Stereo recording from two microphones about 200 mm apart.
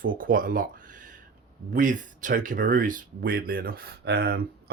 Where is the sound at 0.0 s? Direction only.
45° right (ahead or behind).